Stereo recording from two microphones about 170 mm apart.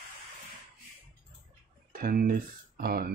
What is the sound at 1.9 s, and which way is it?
Speech, 60° right (ahead or behind).